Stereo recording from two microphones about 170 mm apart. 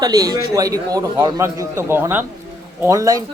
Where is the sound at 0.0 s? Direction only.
20° right (ahead or behind).